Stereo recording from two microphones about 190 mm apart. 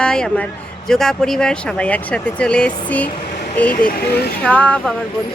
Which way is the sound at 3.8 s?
55° left (ahead or behind).